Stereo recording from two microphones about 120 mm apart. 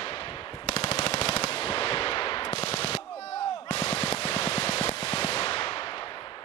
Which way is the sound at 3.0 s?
30° left (ahead or behind).